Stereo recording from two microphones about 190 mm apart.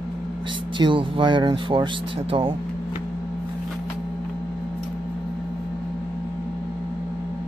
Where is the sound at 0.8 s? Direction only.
25° right (ahead or behind).